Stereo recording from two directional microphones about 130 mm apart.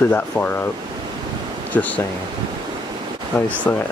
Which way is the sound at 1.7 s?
15° left (ahead or behind).